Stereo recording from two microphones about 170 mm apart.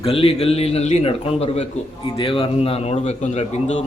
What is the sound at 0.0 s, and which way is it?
A man's voice, 35° left (ahead or behind).